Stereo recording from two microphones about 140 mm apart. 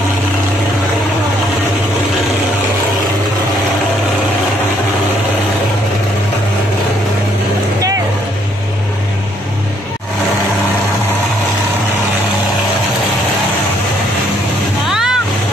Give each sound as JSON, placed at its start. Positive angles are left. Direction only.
{"t": 14.9, "sound": "vehicle", "side_deg": -5}